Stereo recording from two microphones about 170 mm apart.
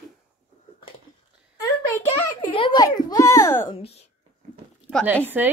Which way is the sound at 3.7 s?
35° left (ahead or behind).